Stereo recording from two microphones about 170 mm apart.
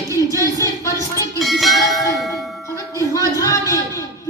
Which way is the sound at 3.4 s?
20° left (ahead or behind).